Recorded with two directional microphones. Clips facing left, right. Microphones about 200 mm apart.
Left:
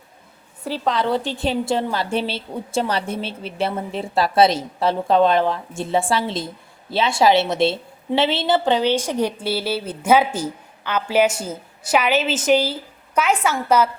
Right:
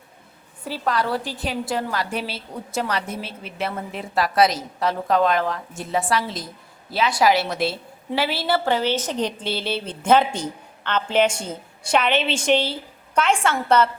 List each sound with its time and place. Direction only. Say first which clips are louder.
0.9 s a woman's voice: left 3 dB; 20° left (ahead or behind)